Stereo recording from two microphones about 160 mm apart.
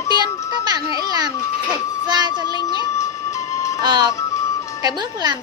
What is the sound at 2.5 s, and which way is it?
Music, 30° left (ahead or behind).